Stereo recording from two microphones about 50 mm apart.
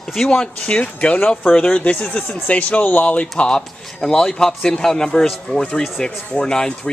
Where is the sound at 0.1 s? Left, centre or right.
Centre.